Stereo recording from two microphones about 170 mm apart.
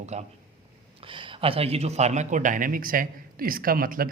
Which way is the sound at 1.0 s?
30° right (ahead or behind).